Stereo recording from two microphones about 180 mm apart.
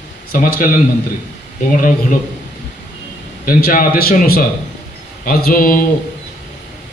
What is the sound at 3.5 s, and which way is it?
A man's voice, 50° left (ahead or behind).